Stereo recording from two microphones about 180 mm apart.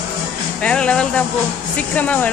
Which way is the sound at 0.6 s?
5° left (ahead or behind).